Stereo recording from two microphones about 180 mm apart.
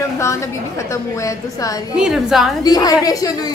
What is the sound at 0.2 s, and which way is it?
A woman's voice, 15° left (ahead or behind).